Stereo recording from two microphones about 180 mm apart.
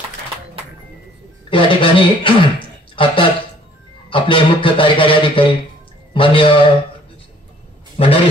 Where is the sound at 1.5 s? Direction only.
30° left (ahead or behind).